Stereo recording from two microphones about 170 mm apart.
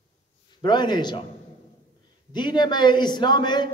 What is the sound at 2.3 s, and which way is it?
A man's voice, 25° left (ahead or behind).